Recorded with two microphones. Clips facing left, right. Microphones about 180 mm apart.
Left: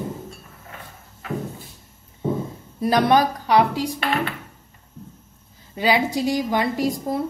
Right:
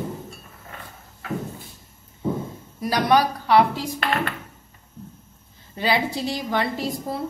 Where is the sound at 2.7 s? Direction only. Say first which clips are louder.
Left 2 dB; 25° left (ahead or behind).